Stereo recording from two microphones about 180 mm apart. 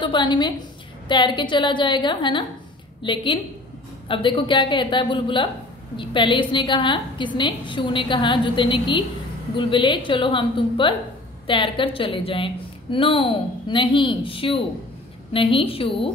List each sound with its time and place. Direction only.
0.0 s a woman's voice: 25° left (ahead or behind)